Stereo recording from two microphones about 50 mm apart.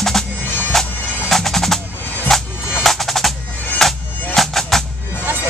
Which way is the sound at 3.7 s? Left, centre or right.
Centre.